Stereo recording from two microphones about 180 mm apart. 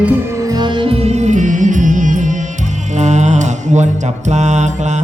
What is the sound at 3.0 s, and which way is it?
Mantra, 40° right (ahead or behind).